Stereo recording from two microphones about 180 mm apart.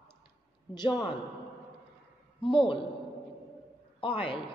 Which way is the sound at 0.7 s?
25° left (ahead or behind).